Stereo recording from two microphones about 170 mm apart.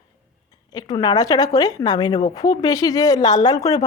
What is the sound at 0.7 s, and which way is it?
Speech, 25° left (ahead or behind).